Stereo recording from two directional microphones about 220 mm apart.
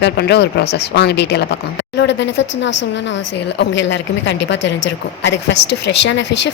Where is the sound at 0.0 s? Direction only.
50° left (ahead or behind).